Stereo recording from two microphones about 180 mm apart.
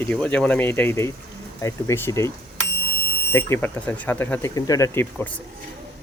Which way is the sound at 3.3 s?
15° left (ahead or behind).